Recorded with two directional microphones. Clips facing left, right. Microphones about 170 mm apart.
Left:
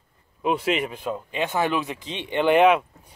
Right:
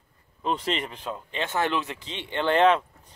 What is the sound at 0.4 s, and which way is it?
Speech, 10° left (ahead or behind).